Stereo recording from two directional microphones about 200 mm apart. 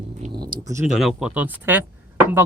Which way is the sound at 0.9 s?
5° right (ahead or behind).